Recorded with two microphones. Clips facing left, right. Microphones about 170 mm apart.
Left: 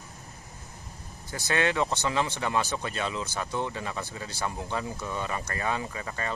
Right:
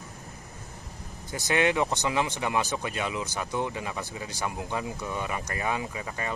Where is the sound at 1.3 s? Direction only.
15° right (ahead or behind).